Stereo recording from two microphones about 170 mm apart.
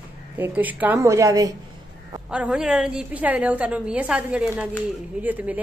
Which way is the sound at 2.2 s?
5° right (ahead or behind).